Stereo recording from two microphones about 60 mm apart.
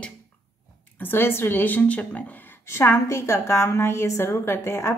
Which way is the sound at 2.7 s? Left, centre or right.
Left.